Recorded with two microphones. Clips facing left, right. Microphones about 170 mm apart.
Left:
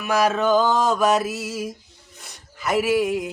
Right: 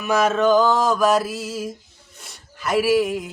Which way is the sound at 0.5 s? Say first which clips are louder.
Right 2 dB; 20° left (ahead or behind).